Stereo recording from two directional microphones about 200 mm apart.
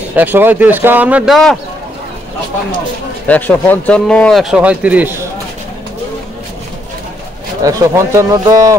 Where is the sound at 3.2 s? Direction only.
10° left (ahead or behind).